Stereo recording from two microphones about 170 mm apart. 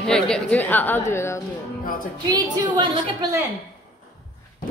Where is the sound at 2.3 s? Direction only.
25° right (ahead or behind).